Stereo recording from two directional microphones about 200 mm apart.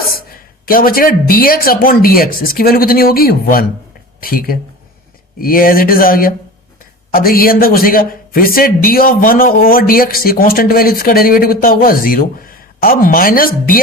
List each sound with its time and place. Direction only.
0.1 s speech: 45° left (ahead or behind)